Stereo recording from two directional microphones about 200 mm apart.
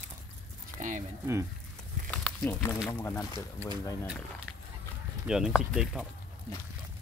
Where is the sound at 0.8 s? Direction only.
40° right (ahead or behind).